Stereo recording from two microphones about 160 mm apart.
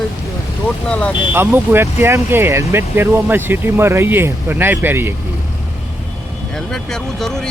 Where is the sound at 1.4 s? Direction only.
15° right (ahead or behind).